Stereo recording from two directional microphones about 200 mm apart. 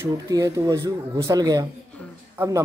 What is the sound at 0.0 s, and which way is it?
Speech, 15° right (ahead or behind).